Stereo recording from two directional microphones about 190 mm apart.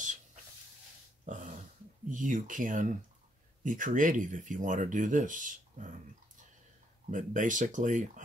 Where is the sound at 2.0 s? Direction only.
45° right (ahead or behind).